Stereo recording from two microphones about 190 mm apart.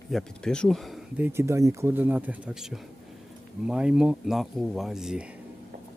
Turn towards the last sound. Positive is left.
turn(degrees=-5)  # may be behind; listen again after turning